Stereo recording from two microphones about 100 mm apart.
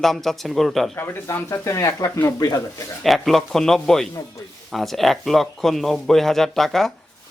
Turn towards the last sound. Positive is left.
turn(degrees=5)  # may be behind; listen again after turning